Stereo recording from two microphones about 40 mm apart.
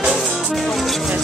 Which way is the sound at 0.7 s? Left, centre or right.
Centre.